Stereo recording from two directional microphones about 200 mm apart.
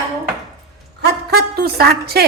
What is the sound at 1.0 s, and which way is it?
A woman's voice, 55° right (ahead or behind).